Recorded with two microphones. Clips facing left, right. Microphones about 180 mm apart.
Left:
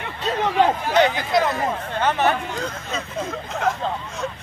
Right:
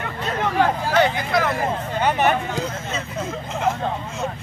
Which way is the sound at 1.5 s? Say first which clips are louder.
Right 1 dB; 30° right (ahead or behind).